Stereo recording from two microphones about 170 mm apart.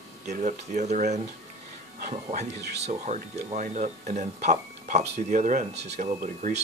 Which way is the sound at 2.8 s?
40° right (ahead or behind).